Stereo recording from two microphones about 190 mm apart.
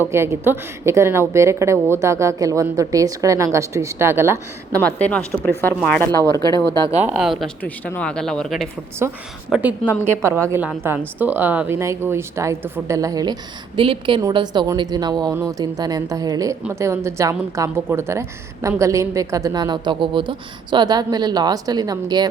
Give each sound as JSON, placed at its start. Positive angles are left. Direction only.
{"t": 0.0, "sound": "a woman's voice", "side_deg": -15}
{"t": 4.8, "sound": "a woman's voice", "side_deg": 5}
{"t": 6.7, "sound": "speech", "side_deg": -25}
{"t": 7.0, "sound": "speech", "side_deg": -5}
{"t": 9.0, "sound": "a woman's voice", "side_deg": -10}